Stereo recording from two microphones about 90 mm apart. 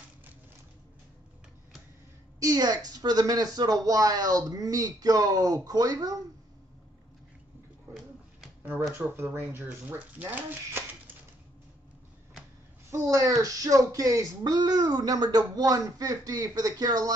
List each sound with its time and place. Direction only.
2.4 s speech: 45° right (ahead or behind)
8.9 s speech: 25° right (ahead or behind)
12.9 s speech: 40° right (ahead or behind)